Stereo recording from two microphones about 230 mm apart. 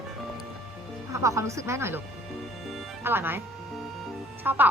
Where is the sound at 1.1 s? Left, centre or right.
Centre.